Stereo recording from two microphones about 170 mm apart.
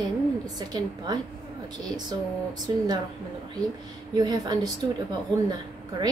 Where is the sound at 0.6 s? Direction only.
25° right (ahead or behind).